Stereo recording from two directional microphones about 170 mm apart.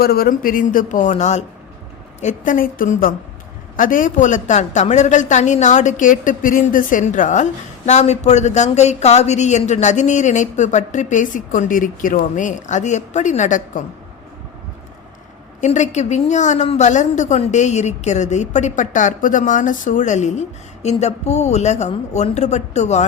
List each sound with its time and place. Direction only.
0.0 s speech: 65° left (ahead or behind); by 13.8 s 45° left (ahead or behind)
15.6 s speech: 45° left (ahead or behind)